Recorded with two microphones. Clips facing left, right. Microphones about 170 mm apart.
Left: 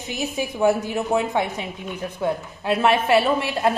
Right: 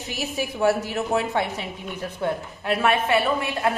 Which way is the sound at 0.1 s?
20° left (ahead or behind).